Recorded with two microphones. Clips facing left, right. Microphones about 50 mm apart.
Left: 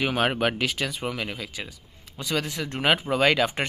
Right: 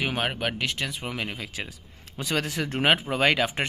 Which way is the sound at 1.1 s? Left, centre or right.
Right.